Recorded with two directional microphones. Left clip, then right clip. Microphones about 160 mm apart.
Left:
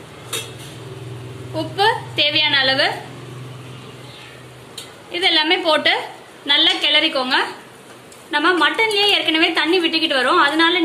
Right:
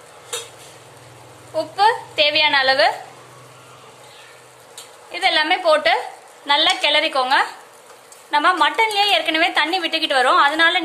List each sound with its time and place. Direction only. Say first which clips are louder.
1.8 s a woman's voice: right 1 dB; 65° right (ahead or behind)
5.1 s a woman's voice: left 1 dB; 60° right (ahead or behind)